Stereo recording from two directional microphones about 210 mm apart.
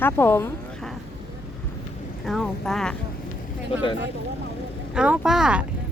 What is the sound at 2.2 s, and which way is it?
Speech, centre (ahead or behind).